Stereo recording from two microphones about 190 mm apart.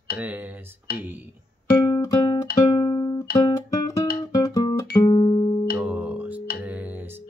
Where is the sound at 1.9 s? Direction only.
25° left (ahead or behind).